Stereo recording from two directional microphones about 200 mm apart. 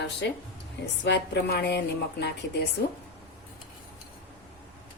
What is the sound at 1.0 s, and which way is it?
Speech, 60° left (ahead or behind).